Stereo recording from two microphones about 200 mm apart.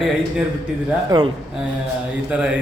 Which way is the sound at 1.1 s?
20° right (ahead or behind).